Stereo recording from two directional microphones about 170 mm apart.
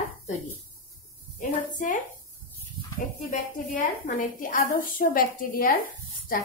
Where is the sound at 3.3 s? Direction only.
50° left (ahead or behind).